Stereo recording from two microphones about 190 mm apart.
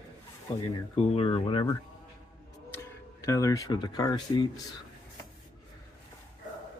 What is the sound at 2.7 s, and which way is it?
Speech, 15° left (ahead or behind).